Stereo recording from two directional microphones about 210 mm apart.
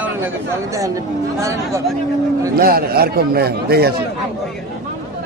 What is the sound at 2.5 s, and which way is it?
Speech, 45° right (ahead or behind).